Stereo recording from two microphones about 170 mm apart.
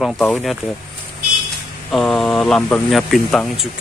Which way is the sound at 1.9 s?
Centre (ahead or behind).